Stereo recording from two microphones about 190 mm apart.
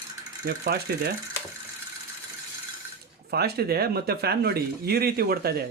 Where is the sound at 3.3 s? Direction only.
55° right (ahead or behind).